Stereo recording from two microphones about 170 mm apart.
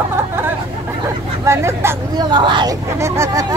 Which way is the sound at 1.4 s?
15° right (ahead or behind).